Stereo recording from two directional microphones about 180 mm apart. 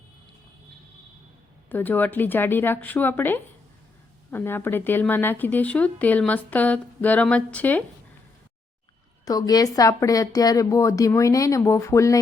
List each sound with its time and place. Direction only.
1.7 s speech: 10° left (ahead or behind)
9.2 s a woman's voice: 20° left (ahead or behind)